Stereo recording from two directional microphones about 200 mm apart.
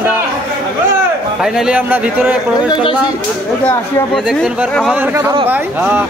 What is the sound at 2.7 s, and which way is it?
Speech, 25° left (ahead or behind).